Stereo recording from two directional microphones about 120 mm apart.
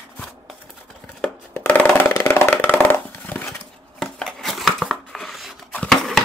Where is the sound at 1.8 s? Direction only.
15° left (ahead or behind).